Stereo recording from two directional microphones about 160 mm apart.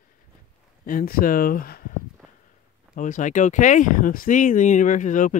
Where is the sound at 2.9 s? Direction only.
50° left (ahead or behind).